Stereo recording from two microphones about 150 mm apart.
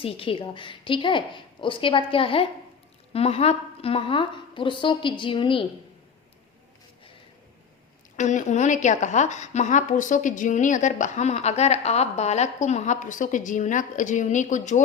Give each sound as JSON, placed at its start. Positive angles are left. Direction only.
{"t": 0.0, "sound": "a woman's voice", "side_deg": 35}
{"t": 8.1, "sound": "a woman's voice", "side_deg": 55}